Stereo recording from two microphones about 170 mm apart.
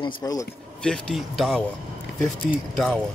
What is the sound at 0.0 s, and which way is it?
Speech, 20° left (ahead or behind).